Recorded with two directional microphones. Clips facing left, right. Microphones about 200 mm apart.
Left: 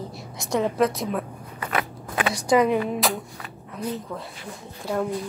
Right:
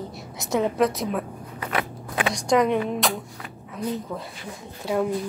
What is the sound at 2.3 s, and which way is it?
Speech, 5° left (ahead or behind).